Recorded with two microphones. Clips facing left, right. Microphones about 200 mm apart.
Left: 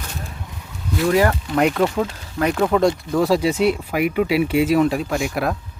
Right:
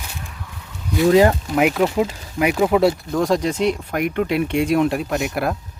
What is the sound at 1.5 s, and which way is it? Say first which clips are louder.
Speech: left 2 dB; 5° right (ahead or behind).